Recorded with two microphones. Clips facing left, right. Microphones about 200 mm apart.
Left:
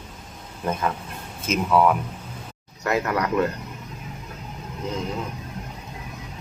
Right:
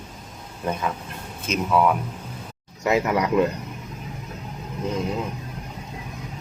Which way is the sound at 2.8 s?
15° right (ahead or behind).